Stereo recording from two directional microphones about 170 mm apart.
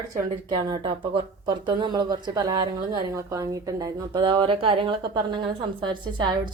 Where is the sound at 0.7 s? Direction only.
30° right (ahead or behind).